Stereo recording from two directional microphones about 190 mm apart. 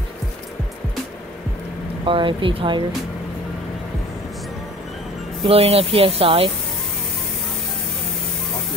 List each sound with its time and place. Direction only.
2.0 s speech: 25° right (ahead or behind)
5.4 s speech: 30° right (ahead or behind)